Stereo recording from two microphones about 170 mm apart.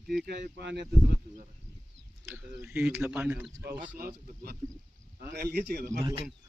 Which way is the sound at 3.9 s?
60° right (ahead or behind).